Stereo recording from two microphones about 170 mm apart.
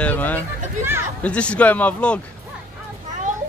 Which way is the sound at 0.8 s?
15° right (ahead or behind).